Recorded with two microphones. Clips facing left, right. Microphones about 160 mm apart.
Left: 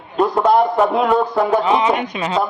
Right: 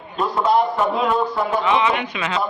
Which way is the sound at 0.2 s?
45° left (ahead or behind).